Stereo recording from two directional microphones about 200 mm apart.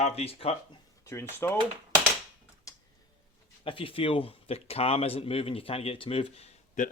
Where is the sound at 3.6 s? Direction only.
25° left (ahead or behind).